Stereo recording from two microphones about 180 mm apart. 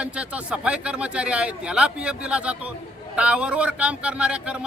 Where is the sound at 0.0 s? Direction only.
5° right (ahead or behind).